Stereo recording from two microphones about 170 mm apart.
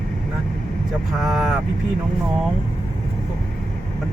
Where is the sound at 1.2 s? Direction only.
Centre (ahead or behind).